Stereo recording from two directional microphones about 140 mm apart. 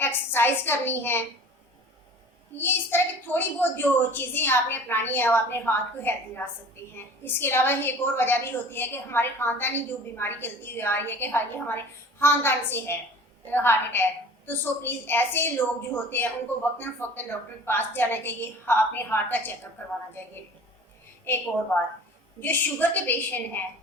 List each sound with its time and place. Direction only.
0.0 s a woman's voice: 15° left (ahead or behind)
2.6 s a woman's voice: 15° left (ahead or behind)
21.2 s a woman's voice: 15° left (ahead or behind)